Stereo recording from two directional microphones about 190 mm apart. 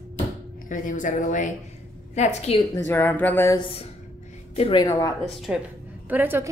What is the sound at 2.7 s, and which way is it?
Speech, 10° left (ahead or behind).